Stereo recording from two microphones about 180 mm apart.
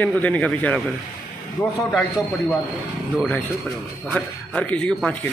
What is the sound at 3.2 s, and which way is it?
Speech, 5° left (ahead or behind).